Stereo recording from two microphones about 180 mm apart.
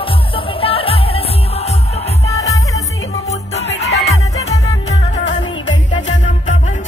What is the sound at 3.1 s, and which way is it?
Music, 35° left (ahead or behind).